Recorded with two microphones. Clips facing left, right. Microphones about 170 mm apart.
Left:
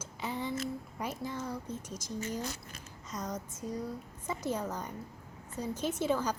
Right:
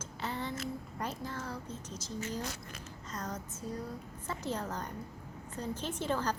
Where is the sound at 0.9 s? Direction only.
10° left (ahead or behind).